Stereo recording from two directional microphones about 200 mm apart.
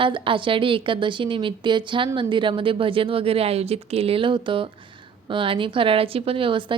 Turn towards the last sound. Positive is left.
turn(degrees=-25)  # may be behind; listen again after turning